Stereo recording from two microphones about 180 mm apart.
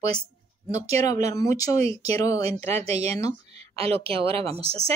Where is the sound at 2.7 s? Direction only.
35° right (ahead or behind).